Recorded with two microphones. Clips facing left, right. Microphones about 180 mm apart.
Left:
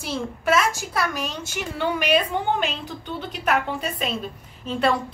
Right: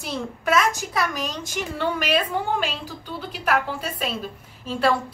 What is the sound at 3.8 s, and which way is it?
Speech, 5° right (ahead or behind).